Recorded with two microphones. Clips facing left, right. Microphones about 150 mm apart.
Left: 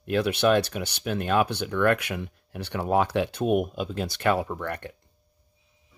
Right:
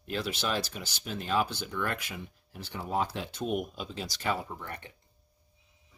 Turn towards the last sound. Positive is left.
turn(degrees=70)  # may be behind; listen again after turning